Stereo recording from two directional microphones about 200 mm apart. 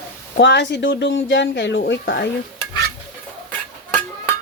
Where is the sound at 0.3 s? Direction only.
60° left (ahead or behind).